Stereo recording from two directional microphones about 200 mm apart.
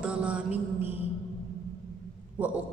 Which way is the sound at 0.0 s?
5° right (ahead or behind).